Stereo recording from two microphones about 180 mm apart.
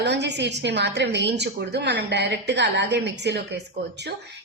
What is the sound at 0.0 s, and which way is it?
A woman's voice, 70° right (ahead or behind).